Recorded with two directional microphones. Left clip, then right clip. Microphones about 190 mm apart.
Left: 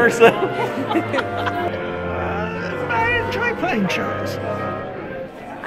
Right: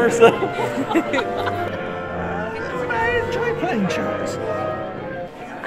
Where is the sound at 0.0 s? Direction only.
5° left (ahead or behind).